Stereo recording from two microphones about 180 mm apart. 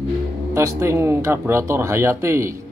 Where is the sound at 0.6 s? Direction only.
15° right (ahead or behind).